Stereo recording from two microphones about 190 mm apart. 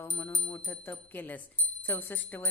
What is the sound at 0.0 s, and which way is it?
A woman's voice, 20° left (ahead or behind).